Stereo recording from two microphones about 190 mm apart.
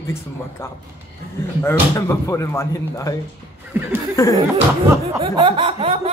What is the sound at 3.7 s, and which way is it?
Speech, 10° right (ahead or behind).